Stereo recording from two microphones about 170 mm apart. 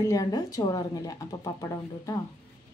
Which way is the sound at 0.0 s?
20° left (ahead or behind).